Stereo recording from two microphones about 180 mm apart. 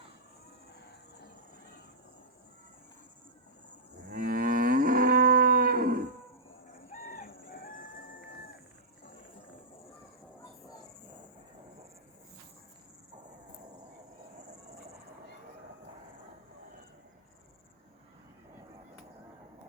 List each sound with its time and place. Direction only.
4.1 s moo: 50° right (ahead or behind)
6.9 s chicken: 50° left (ahead or behind)